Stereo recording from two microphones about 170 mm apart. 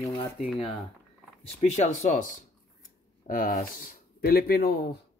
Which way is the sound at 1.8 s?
50° left (ahead or behind).